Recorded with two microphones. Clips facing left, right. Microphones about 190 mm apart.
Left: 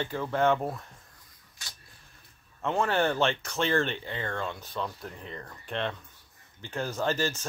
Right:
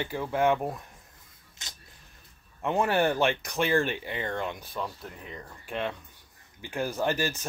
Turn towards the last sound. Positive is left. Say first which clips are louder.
# right 1 dB
turn(degrees=-15)  # may be behind; listen again after turning